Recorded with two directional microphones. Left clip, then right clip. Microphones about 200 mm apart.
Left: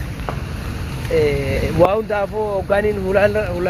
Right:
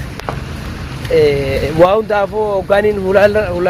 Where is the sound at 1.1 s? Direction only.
25° right (ahead or behind).